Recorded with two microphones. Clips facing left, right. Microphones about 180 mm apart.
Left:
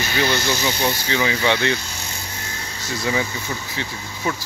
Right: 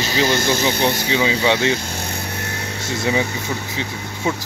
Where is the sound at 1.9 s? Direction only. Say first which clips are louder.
Right 7 dB; 55° right (ahead or behind).